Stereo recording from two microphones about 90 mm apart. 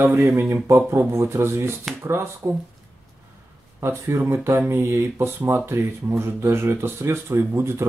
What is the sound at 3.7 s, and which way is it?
Speech, 30° right (ahead or behind).